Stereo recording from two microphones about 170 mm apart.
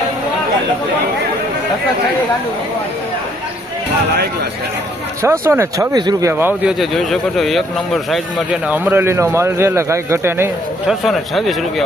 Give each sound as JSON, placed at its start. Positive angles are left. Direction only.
{"t": 5.2, "sound": "speech", "side_deg": -15}
{"t": 6.4, "sound": "speech", "side_deg": -5}
{"t": 8.6, "sound": "a man's voice", "side_deg": -10}
{"t": 10.8, "sound": "speech", "side_deg": 0}